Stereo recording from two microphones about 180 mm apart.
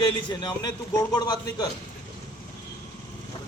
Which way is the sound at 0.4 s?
20° left (ahead or behind).